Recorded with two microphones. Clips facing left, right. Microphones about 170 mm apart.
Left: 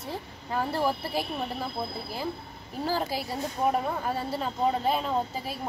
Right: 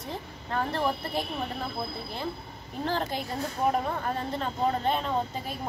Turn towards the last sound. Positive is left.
turn(degrees=5)  # may be behind; listen again after turning